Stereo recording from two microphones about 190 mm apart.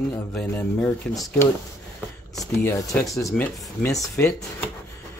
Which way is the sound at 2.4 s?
15° left (ahead or behind).